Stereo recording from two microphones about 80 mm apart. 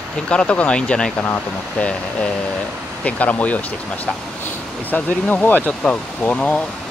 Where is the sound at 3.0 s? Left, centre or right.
Centre.